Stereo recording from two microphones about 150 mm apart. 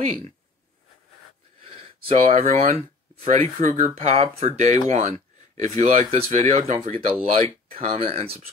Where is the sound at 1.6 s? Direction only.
40° right (ahead or behind).